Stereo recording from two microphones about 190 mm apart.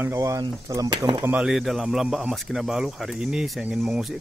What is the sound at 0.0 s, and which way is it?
Speech, 15° right (ahead or behind).